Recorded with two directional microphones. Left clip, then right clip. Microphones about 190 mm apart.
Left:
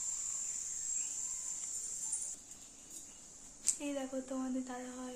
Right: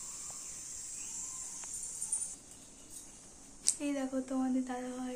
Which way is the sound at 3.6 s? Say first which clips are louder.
Right 3 dB; centre (ahead or behind).